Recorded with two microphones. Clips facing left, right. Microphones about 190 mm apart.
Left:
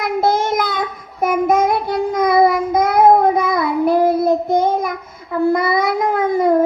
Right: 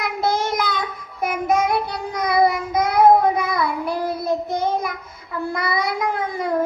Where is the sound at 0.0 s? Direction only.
50° left (ahead or behind).